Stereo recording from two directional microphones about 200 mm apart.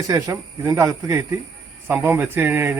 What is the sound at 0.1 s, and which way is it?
Speech, 15° right (ahead or behind).